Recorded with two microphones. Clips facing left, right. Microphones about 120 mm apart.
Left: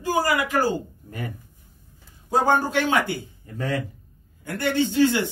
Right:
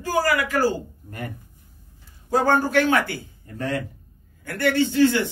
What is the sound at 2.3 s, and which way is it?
Speech, 20° left (ahead or behind).